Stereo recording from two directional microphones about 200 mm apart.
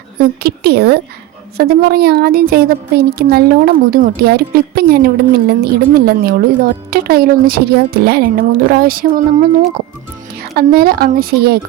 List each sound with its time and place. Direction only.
0.2 s speech: 50° right (ahead or behind)
10.5 s speech: 50° right (ahead or behind)